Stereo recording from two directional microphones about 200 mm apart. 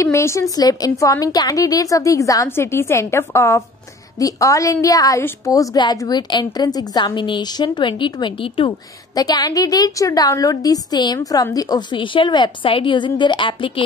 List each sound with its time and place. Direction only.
0.0 s a woman's voice: 15° left (ahead or behind)